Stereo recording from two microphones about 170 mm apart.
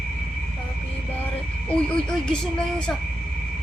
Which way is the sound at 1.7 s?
5° left (ahead or behind).